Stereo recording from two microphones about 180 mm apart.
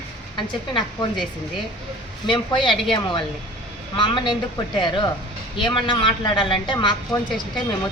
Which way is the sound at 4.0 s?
25° left (ahead or behind).